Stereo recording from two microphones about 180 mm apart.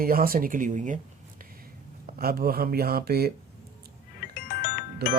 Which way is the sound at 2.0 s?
55° right (ahead or behind).